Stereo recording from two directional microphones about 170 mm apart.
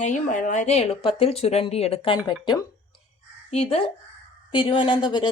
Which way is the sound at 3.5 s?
35° left (ahead or behind).